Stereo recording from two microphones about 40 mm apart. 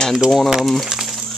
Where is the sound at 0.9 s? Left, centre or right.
Centre.